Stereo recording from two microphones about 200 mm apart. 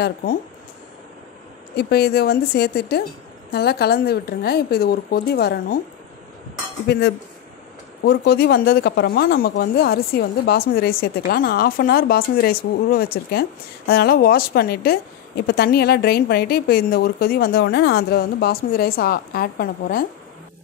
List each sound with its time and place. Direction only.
0.0 s speech: 50° left (ahead or behind)
1.8 s speech: 55° left (ahead or behind)
8.0 s speech: 55° left (ahead or behind)